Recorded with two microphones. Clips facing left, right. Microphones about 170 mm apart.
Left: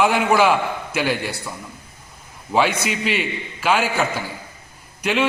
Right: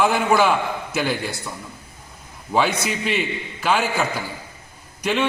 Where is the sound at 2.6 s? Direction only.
5° left (ahead or behind).